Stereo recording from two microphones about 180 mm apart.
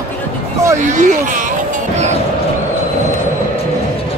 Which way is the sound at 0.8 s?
45° right (ahead or behind).